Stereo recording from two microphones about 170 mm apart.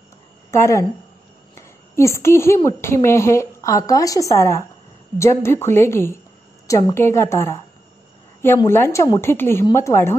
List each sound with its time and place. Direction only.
0.5 s a woman's voice: 15° left (ahead or behind)
8.6 s speech: 15° left (ahead or behind)